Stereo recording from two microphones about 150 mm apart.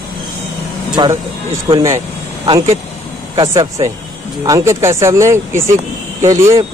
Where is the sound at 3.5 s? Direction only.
20° right (ahead or behind).